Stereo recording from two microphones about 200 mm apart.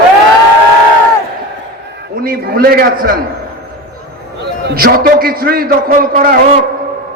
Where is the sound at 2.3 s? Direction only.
50° right (ahead or behind).